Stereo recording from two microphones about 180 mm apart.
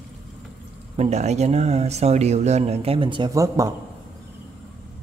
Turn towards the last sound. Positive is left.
turn(degrees=-20)  # may be behind; listen again after turning